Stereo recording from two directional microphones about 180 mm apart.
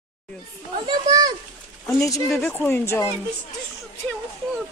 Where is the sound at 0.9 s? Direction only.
20° right (ahead or behind).